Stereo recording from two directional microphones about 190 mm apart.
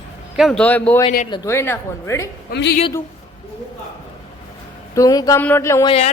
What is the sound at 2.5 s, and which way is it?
Speech, 50° left (ahead or behind).